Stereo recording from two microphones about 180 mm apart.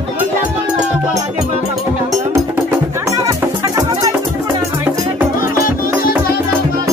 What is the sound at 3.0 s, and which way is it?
Music, 20° right (ahead or behind).